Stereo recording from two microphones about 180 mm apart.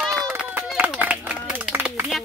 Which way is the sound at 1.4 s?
5° right (ahead or behind).